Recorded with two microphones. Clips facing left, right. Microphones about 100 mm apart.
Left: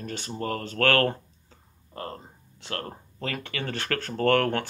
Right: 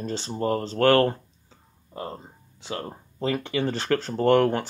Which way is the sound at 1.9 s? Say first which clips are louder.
Right 2 dB; 5° right (ahead or behind).